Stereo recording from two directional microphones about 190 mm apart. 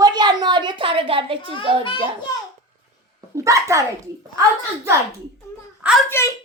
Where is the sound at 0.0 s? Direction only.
20° right (ahead or behind).